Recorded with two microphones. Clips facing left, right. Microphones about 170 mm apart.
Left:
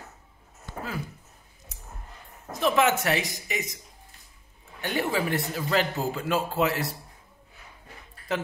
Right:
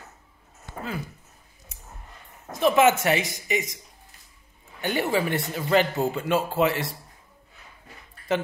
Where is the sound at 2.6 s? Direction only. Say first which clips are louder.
Right 4 dB; centre (ahead or behind).